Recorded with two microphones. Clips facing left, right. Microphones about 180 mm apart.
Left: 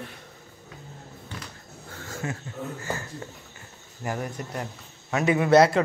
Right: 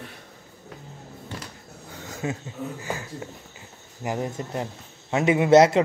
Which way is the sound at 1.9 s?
15° right (ahead or behind).